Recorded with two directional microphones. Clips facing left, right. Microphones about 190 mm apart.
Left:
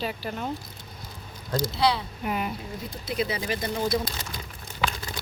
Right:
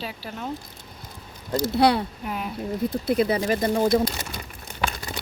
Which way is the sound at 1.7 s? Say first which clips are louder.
Right 6 dB; 60° right (ahead or behind).